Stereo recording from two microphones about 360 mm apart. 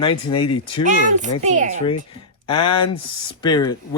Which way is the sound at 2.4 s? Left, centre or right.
Centre.